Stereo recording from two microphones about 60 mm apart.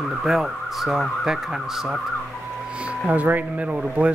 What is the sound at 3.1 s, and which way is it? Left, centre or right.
Speech, right.